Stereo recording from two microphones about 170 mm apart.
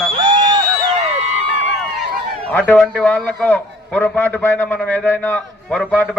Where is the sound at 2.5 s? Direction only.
10° left (ahead or behind).